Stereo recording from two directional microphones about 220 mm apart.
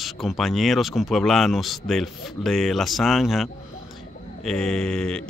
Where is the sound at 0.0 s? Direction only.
Centre (ahead or behind).